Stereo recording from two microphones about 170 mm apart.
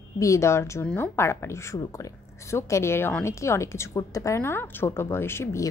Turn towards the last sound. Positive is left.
turn(degrees=15)  # may be behind; listen again after turning